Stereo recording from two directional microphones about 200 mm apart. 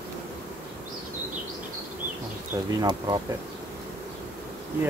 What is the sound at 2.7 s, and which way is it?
Speech, 20° right (ahead or behind).